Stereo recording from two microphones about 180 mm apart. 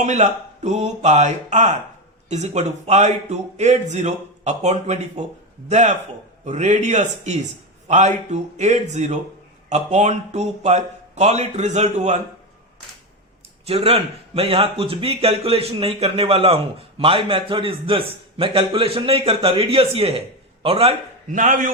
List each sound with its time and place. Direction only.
0.0 s a man's voice: 40° right (ahead or behind)
13.7 s a man's voice: 30° right (ahead or behind)
21.3 s a man's voice: 45° right (ahead or behind)